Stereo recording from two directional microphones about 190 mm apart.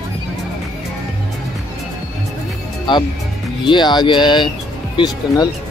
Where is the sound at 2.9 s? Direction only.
25° left (ahead or behind).